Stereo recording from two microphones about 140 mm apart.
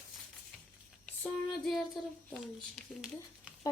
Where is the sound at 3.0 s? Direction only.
5° right (ahead or behind).